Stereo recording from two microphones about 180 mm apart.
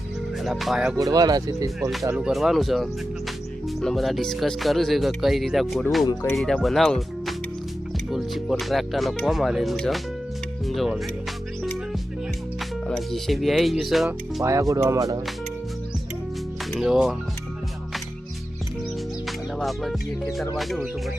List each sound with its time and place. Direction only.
0.4 s speech: centre (ahead or behind)
0.9 s speech: 20° right (ahead or behind)
2.0 s speech: 5° right (ahead or behind)
12.9 s speech: centre (ahead or behind)
14.4 s speech: 15° right (ahead or behind)
16.7 s speech: centre (ahead or behind)
19.5 s music: centre (ahead or behind)
20.6 s speech: centre (ahead or behind)